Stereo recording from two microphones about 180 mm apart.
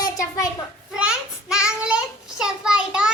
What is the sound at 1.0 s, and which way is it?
Child singing, 5° right (ahead or behind).